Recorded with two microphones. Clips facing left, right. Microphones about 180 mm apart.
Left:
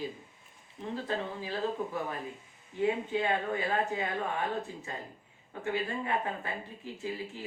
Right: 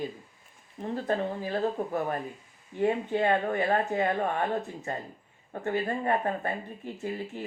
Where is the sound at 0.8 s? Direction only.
50° right (ahead or behind).